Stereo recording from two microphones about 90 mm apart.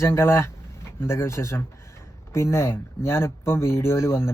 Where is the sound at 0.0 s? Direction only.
30° left (ahead or behind).